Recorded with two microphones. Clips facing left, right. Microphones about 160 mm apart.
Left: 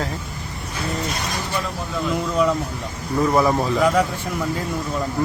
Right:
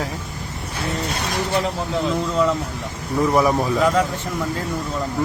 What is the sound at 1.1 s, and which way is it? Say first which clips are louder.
Vehicle: right 4 dB; 65° right (ahead or behind).